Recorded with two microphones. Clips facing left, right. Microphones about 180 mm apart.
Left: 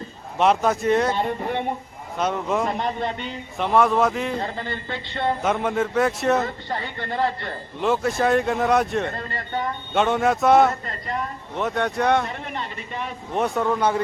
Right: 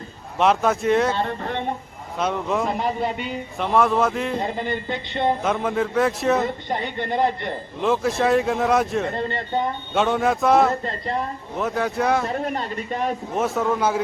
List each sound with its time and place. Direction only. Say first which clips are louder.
0.3 s a man's voice: even; centre (ahead or behind)
1.1 s speech: left 1 dB; 15° left (ahead or behind)
2.1 s a man's voice: even; centre (ahead or behind)
4.4 s speech: right 3 dB; 15° right (ahead or behind)
5.4 s a man's voice: even; centre (ahead or behind)
6.4 s speech: right 3 dB; 20° right (ahead or behind)
7.8 s a man's voice: even; centre (ahead or behind)
9.1 s speech: right 5 dB; 25° right (ahead or behind)
9.9 s a man's voice: left 1 dB; centre (ahead or behind)
10.8 s speech: right 4 dB; 30° right (ahead or behind)
11.5 s a man's voice: even; centre (ahead or behind)
12.3 s speech: right 6 dB; 40° right (ahead or behind)
13.3 s a man's voice: left 2 dB; centre (ahead or behind)